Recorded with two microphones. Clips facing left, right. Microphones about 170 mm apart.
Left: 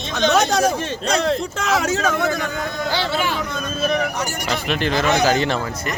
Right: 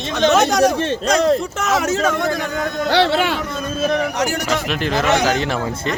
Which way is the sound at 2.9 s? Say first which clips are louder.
Right 8 dB; 70° right (ahead or behind).